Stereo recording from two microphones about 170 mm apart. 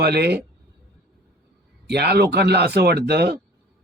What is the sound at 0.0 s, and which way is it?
Speech, 70° right (ahead or behind).